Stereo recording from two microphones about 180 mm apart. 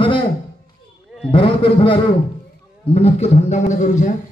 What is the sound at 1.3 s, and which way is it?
A man's voice, 30° left (ahead or behind).